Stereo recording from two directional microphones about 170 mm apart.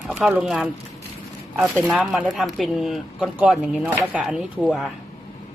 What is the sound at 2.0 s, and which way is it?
Speech, 5° right (ahead or behind).